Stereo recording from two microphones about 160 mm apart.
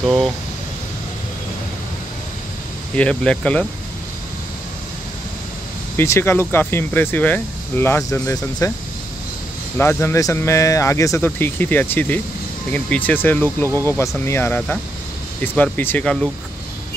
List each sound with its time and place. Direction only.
0.0 s speech: centre (ahead or behind)
3.0 s speech: 5° left (ahead or behind)
5.9 s speech: 15° left (ahead or behind)
9.8 s speech: 15° left (ahead or behind)